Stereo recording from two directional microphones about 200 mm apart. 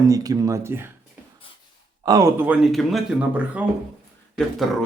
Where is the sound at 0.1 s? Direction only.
20° right (ahead or behind).